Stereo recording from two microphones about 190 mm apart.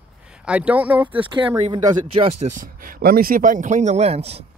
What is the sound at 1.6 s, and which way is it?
Speech, 30° right (ahead or behind).